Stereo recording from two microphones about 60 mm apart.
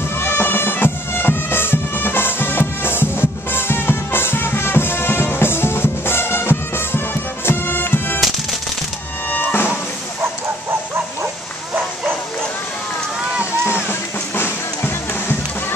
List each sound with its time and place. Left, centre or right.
0.2 s bagpipes: left
7.4 s music: left
8.2 s music: centre
9.3 s music: left
13.8 s music: left